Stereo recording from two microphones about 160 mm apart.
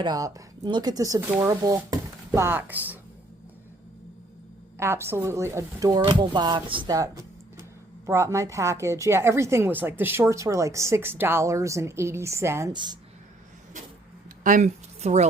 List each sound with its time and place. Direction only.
0.0 s speech: 25° right (ahead or behind)
4.8 s a woman's voice: 15° right (ahead or behind)
12.7 s speech: 30° right (ahead or behind)
14.4 s speech: 50° right (ahead or behind)